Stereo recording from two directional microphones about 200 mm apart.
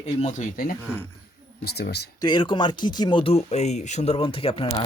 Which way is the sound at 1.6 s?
55° left (ahead or behind).